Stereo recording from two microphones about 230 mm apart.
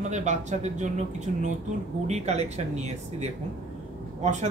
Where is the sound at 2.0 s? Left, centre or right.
Right.